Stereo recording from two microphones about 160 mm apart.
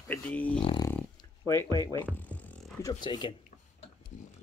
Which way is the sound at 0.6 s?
30° left (ahead or behind).